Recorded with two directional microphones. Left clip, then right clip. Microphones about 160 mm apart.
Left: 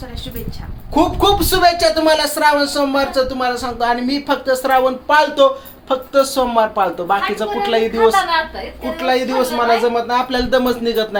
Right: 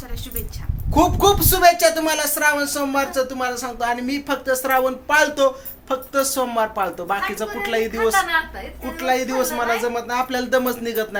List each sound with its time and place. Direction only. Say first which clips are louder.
1.2 s speech: left 2 dB; 25° right (ahead or behind); by 11.2 s 5° right (ahead or behind)